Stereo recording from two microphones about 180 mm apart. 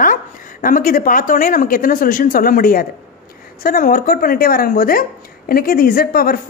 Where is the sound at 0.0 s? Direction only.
50° left (ahead or behind).